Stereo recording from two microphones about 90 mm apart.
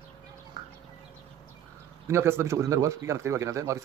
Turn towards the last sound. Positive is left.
turn(degrees=-35)  # may be behind; listen again after turning